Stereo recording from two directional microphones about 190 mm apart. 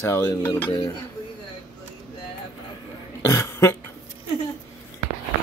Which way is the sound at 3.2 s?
15° left (ahead or behind).